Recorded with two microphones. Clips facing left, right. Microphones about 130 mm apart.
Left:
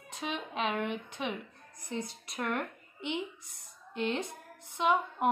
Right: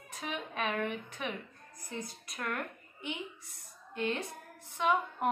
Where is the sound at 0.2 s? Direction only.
20° left (ahead or behind).